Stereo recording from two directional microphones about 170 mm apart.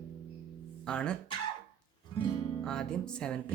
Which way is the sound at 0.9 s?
5° left (ahead or behind).